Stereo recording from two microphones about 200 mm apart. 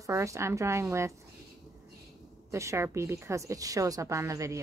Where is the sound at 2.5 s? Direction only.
15° right (ahead or behind).